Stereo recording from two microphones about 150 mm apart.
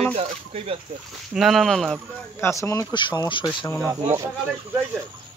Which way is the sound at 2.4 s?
20° left (ahead or behind).